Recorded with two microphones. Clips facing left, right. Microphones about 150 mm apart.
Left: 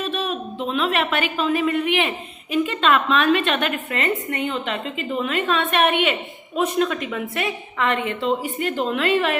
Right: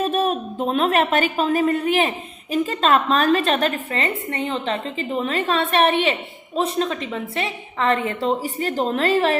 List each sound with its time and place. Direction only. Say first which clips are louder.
0.0 s speech: right 5 dB; 45° right (ahead or behind)